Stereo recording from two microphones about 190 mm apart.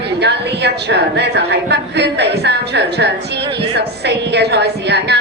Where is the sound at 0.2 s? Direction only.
60° right (ahead or behind).